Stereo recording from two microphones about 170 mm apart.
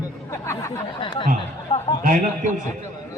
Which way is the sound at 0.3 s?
15° left (ahead or behind).